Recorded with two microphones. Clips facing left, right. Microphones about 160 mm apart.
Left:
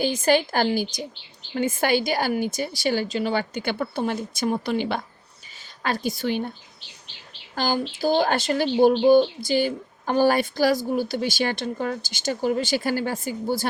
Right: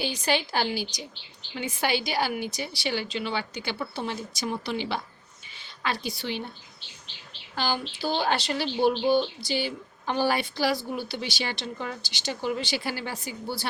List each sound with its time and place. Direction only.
0.0 s a woman's voice: 50° left (ahead or behind)
7.5 s speech: 45° left (ahead or behind)